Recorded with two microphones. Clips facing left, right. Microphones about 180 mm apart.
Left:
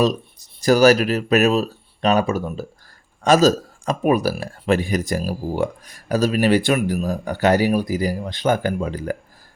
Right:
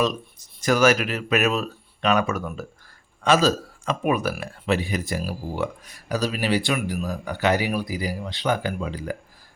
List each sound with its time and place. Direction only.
0.0 s speech: 35° left (ahead or behind)
3.2 s speech: 40° left (ahead or behind)